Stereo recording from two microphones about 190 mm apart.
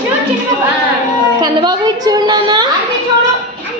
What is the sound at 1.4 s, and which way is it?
A woman's voice, 20° right (ahead or behind).